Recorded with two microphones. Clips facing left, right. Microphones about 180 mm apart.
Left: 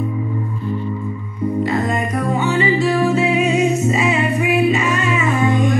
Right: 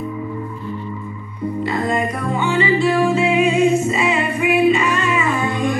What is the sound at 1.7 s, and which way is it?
Music, 45° left (ahead or behind).